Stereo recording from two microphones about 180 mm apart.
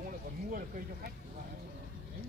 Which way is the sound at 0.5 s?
50° right (ahead or behind).